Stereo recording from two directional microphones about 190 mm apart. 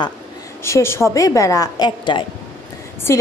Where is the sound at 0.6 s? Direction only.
15° left (ahead or behind).